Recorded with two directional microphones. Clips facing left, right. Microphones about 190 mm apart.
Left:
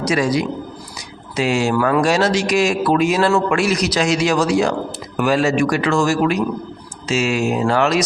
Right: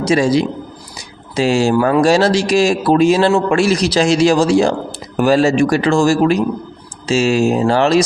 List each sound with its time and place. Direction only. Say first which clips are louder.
0.0 s speech: right 4 dB; 30° right (ahead or behind)